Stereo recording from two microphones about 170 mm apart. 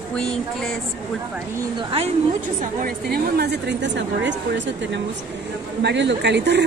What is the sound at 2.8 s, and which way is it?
Speech, 65° right (ahead or behind).